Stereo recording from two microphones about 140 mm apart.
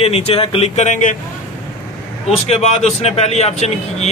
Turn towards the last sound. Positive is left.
turn(degrees=50)  # may be behind; listen again after turning